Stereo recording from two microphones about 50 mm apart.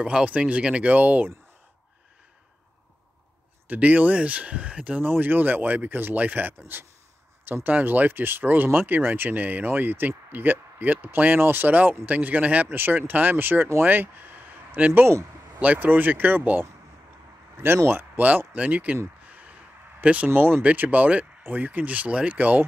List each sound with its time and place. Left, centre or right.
0.0 s speech: right
3.6 s speech: right
5.0 s speech: right
11.4 s speech: right
11.7 s speech: right
12.7 s speech: right
17.8 s speech: right
18.5 s speech: right
19.2 s a sound: right
20.0 s speech: right
20.3 s speech: right